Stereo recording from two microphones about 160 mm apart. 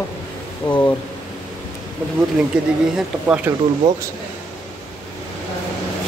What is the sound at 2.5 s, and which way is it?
Speech, 5° right (ahead or behind).